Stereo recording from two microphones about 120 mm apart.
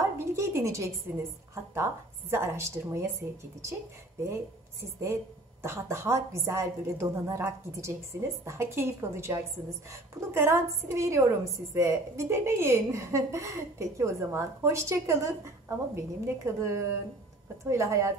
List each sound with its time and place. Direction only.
0.2 s a woman's voice: 25° right (ahead or behind)
5.6 s a woman's voice: 20° right (ahead or behind)